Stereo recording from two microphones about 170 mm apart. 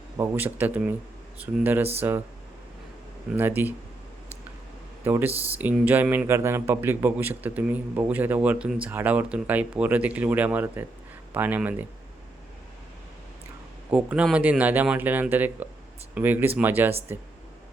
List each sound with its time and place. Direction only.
0.2 s speech: 10° right (ahead or behind)
3.3 s speech: 10° right (ahead or behind)
5.0 s speech: 10° right (ahead or behind)
13.9 s speech: 5° right (ahead or behind)